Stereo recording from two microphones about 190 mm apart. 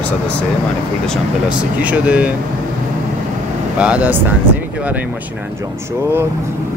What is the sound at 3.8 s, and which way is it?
Speech, 5° right (ahead or behind).